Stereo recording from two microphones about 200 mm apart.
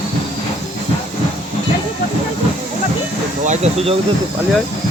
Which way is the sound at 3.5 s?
30° right (ahead or behind).